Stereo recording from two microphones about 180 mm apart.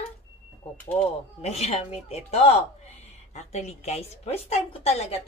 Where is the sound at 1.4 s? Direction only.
35° left (ahead or behind).